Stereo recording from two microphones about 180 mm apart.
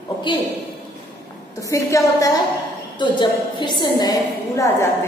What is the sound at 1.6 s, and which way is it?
A woman's voice, 15° left (ahead or behind).